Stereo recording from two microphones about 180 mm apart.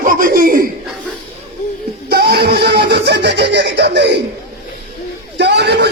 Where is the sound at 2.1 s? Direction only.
60° right (ahead or behind).